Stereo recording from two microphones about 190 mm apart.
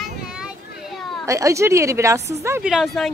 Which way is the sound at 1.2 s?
15° right (ahead or behind).